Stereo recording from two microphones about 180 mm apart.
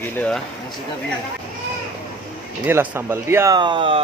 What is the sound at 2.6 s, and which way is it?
Speech, 10° right (ahead or behind).